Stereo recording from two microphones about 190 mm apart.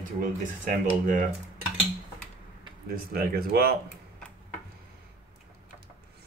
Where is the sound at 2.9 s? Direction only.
50° right (ahead or behind).